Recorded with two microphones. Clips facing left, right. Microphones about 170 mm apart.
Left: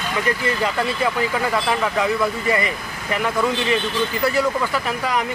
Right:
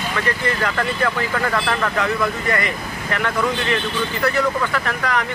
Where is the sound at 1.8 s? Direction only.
10° left (ahead or behind).